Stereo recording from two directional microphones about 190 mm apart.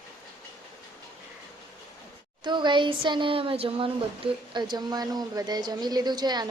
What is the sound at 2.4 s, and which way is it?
A woman's voice, 25° right (ahead or behind).